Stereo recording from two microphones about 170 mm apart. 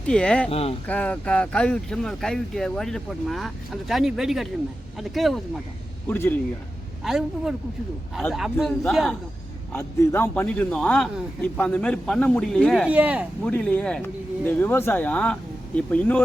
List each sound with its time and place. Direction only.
0.0 s speech: 5° left (ahead or behind)
0.5 s speech: 35° left (ahead or behind)
0.9 s speech: 5° left (ahead or behind)
6.1 s speech: 10° left (ahead or behind)
7.0 s speech: 5° right (ahead or behind)
9.7 s speech: 15° left (ahead or behind)
12.9 s speech: 10° right (ahead or behind)
13.4 s speech: 5° left (ahead or behind)